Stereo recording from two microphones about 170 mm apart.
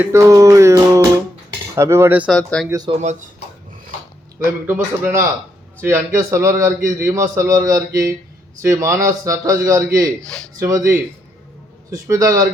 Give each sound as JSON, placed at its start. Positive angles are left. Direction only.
{"t": 0.0, "sound": "a man's voice", "side_deg": -15}
{"t": 2.3, "sound": "speech", "side_deg": 5}
{"t": 2.6, "sound": "a man's voice", "side_deg": -20}
{"t": 3.0, "sound": "speech", "side_deg": -45}
{"t": 4.4, "sound": "a man's voice", "side_deg": -15}
{"t": 10.2, "sound": "speech", "side_deg": 5}
{"t": 11.9, "sound": "a man's voice", "side_deg": -20}